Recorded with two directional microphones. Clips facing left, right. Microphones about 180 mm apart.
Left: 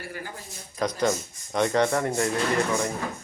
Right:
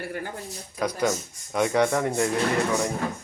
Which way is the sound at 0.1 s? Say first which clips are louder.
Right 4 dB; 55° right (ahead or behind).